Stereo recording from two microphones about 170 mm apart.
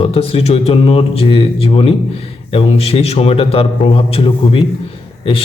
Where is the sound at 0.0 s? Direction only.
35° left (ahead or behind).